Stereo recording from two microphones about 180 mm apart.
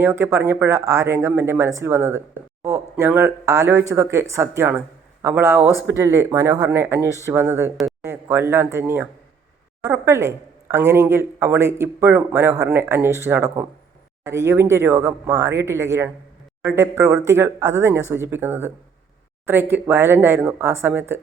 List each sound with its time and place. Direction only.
0.0 s speech: 15° right (ahead or behind)